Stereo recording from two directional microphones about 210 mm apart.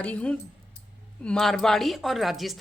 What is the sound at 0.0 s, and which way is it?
A woman's voice, 5° left (ahead or behind).